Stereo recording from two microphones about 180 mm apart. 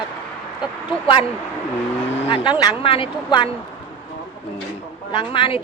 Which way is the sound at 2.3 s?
30° left (ahead or behind).